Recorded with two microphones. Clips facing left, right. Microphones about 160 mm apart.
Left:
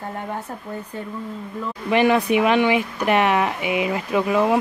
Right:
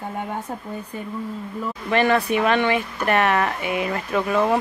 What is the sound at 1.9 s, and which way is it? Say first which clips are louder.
Speech: left 2 dB; 15° left (ahead or behind).